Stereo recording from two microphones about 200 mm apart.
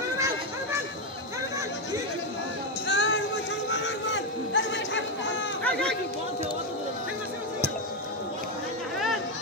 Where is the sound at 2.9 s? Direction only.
60° left (ahead or behind).